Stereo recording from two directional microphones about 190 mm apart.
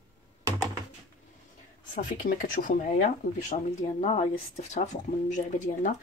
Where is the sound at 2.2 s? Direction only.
45° left (ahead or behind).